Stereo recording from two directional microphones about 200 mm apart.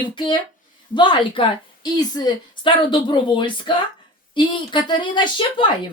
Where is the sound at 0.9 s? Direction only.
25° left (ahead or behind).